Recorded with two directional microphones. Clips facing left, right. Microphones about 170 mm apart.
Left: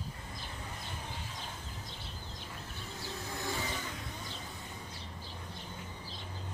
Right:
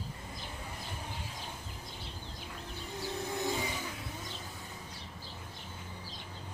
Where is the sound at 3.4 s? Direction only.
15° right (ahead or behind).